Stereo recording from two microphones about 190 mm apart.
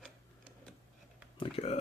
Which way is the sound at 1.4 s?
30° left (ahead or behind).